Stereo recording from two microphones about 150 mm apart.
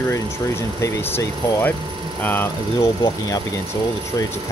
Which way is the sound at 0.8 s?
20° left (ahead or behind).